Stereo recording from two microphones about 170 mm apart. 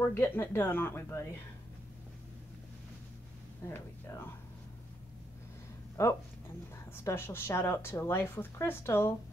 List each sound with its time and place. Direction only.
0.0 s a woman's voice: 15° left (ahead or behind)
3.6 s a woman's voice: 15° left (ahead or behind)
6.0 s a woman's voice: 15° left (ahead or behind)